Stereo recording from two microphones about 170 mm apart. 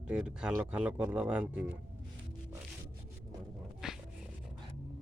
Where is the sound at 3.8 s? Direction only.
5° right (ahead or behind).